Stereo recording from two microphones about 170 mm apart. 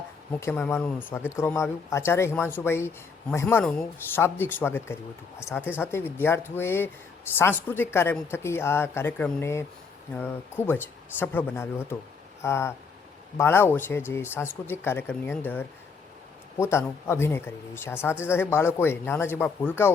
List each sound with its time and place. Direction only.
0.3 s speech: 15° left (ahead or behind)